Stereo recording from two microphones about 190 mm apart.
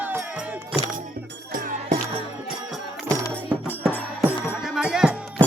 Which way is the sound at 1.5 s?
45° right (ahead or behind).